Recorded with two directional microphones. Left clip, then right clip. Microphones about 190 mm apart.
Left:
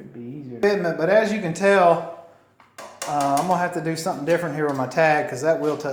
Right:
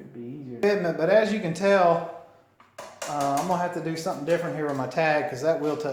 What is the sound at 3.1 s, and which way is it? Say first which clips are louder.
Speech: left 5 dB; 30° left (ahead or behind).